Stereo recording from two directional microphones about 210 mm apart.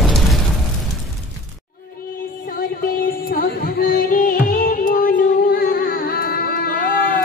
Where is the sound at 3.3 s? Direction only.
45° left (ahead or behind).